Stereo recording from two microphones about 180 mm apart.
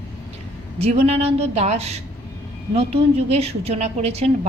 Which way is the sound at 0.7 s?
35° right (ahead or behind).